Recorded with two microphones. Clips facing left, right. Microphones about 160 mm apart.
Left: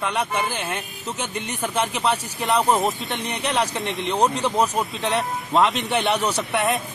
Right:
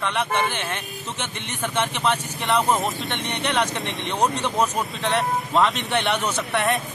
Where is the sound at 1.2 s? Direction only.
40° left (ahead or behind).